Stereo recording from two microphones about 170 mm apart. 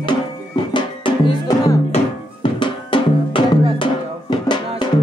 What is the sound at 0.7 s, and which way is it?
Music, 30° left (ahead or behind).